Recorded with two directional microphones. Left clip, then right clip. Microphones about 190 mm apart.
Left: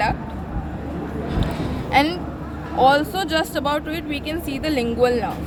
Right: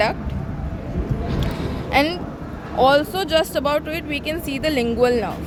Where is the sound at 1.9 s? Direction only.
30° right (ahead or behind).